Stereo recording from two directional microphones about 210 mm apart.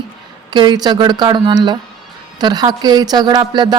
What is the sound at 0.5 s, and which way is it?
A woman's voice, 20° right (ahead or behind).